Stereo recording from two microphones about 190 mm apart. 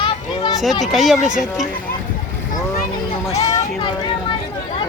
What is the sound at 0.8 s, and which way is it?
Speech, centre (ahead or behind).